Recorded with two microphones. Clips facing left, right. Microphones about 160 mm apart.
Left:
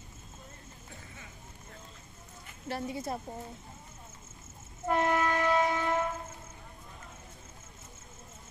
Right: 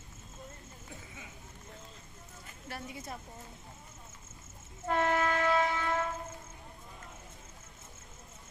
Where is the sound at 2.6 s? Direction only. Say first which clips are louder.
Left 8 dB; 30° left (ahead or behind).